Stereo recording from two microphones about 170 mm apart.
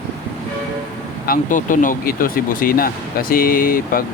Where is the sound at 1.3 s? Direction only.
50° left (ahead or behind).